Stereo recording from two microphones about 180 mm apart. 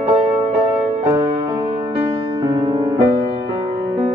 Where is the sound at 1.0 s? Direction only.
30° right (ahead or behind).